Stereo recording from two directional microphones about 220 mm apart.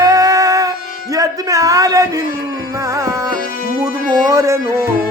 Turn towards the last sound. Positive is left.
turn(degrees=-15)  # may be behind; listen again after turning